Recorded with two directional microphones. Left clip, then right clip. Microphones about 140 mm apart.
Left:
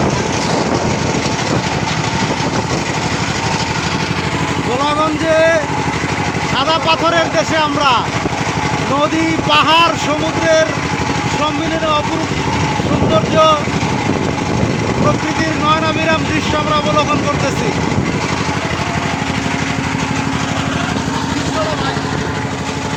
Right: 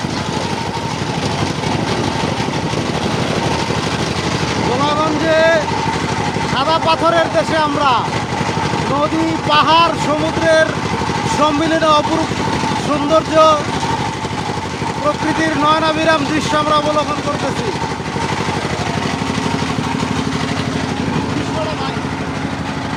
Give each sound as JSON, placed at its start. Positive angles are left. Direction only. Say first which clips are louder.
{"t": 5.3, "sound": "vehicle", "louder": "left 1 dB", "side_deg": -10}
{"t": 6.7, "sound": "speech", "louder": "even", "side_deg": -10}
{"t": 9.5, "sound": "speech", "louder": "even", "side_deg": -10}
{"t": 13.3, "sound": "speech", "louder": "even", "side_deg": -20}
{"t": 15.6, "sound": "speech", "louder": "right 1 dB", "side_deg": -25}